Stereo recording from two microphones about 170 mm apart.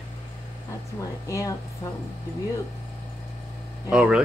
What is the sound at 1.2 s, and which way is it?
Speech, 20° left (ahead or behind).